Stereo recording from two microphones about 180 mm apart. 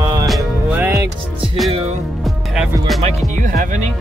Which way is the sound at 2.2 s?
5° right (ahead or behind).